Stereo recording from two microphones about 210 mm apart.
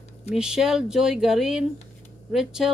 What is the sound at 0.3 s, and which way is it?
Speech, 5° right (ahead or behind).